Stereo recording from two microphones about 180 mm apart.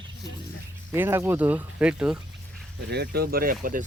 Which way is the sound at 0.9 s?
15° right (ahead or behind).